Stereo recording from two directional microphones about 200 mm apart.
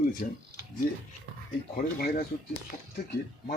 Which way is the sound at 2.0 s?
50° left (ahead or behind).